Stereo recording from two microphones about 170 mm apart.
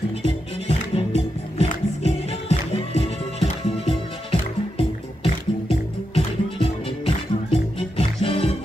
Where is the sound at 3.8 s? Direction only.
30° left (ahead or behind).